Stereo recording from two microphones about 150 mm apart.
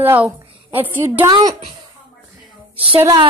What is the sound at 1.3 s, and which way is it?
Speech, 30° right (ahead or behind).